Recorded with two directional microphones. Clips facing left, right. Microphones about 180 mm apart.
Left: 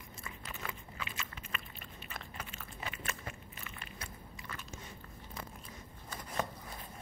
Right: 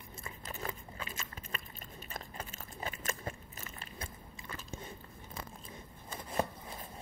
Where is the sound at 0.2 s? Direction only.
35° right (ahead or behind).